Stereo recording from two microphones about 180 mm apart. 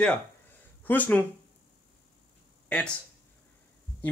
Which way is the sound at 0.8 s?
10° left (ahead or behind).